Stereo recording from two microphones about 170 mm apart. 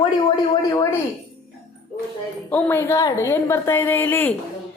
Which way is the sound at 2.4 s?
10° left (ahead or behind).